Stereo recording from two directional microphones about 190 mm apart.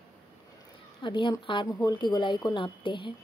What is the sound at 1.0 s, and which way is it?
Speech, 25° left (ahead or behind).